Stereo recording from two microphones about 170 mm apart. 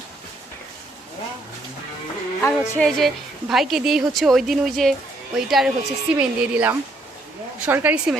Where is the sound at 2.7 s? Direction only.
5° left (ahead or behind).